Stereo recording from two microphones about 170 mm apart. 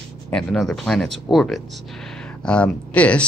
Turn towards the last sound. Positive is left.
turn(degrees=5)  # may be behind; listen again after turning